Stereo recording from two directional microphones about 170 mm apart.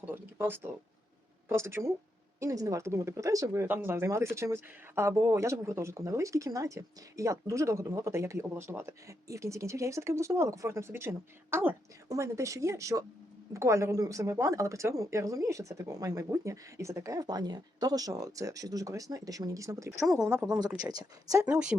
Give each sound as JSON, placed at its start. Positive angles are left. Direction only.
{"t": 0.0, "sound": "speech", "side_deg": -10}
{"t": 20.1, "sound": "speech", "side_deg": -5}
{"t": 20.8, "sound": "speech", "side_deg": -20}